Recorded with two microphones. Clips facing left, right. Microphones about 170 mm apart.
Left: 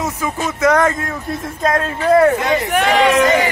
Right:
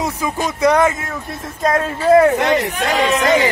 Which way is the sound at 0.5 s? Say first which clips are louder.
Even; 15° right (ahead or behind).